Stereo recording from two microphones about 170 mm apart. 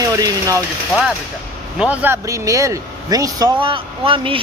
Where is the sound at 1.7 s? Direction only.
10° right (ahead or behind).